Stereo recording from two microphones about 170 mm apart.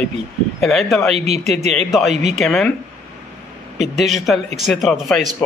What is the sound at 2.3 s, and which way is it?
Speech, centre (ahead or behind).